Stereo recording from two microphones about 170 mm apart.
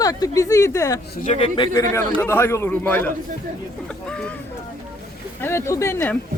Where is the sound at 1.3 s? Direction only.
35° left (ahead or behind).